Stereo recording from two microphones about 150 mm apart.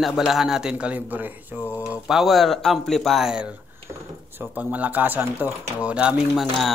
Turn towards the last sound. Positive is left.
turn(degrees=0)  # may be behind; listen again after turning